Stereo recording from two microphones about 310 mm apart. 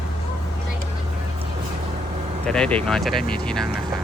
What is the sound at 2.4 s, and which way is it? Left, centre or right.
Speech, centre.